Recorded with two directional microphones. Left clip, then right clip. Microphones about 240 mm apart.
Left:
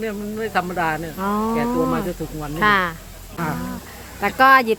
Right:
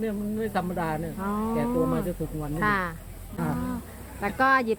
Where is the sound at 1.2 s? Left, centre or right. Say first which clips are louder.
Left 8 dB; centre.